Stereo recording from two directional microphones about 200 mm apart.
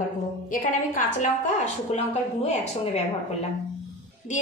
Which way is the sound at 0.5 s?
40° left (ahead or behind).